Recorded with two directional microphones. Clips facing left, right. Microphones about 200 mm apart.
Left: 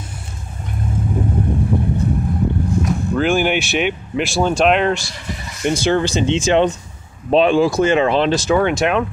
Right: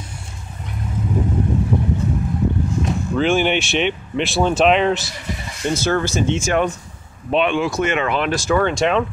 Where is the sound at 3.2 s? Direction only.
5° left (ahead or behind).